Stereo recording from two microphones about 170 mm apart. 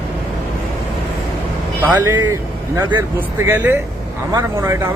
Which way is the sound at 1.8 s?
20° right (ahead or behind).